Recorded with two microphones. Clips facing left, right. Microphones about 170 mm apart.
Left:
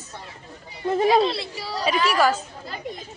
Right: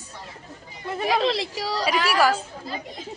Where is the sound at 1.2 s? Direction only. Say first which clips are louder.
Left 2 dB; 90° right.